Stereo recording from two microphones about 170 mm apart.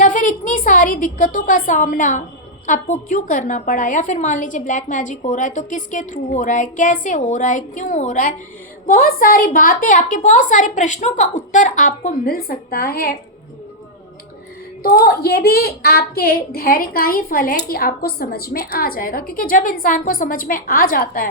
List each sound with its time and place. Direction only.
0.0 s a woman's voice: 50° left (ahead or behind)
14.8 s a woman's voice: 60° left (ahead or behind)